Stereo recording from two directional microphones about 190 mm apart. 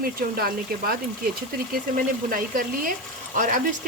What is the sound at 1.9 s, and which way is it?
Speech, 50° right (ahead or behind).